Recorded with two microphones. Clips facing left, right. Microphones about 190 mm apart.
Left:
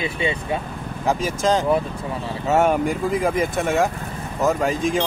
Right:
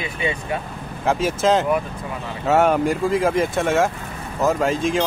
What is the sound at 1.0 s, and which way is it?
Speech, centre (ahead or behind).